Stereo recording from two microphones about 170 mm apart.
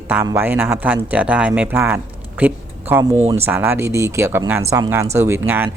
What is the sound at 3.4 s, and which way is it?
Speech, 10° right (ahead or behind).